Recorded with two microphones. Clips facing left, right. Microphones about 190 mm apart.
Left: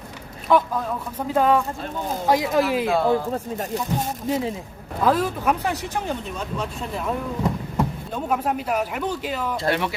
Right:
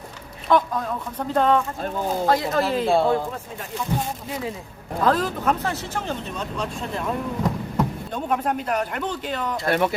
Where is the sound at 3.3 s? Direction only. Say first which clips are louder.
Left 6 dB; 40° left (ahead or behind).